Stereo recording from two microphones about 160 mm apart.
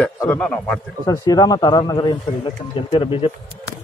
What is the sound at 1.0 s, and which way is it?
Speech, 25° left (ahead or behind).